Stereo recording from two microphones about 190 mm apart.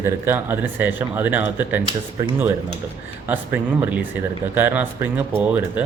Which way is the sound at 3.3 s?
10° right (ahead or behind).